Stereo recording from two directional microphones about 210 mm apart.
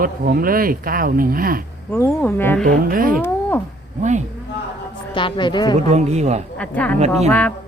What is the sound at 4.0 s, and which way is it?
Speech, 35° right (ahead or behind).